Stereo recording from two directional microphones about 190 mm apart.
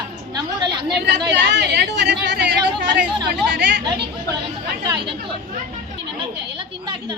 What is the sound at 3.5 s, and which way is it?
Speech, 65° right (ahead or behind).